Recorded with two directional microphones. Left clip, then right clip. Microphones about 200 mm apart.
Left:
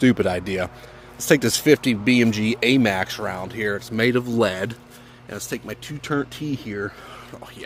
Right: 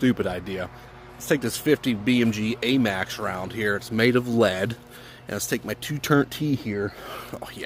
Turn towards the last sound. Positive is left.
turn(degrees=-45)  # may be behind; listen again after turning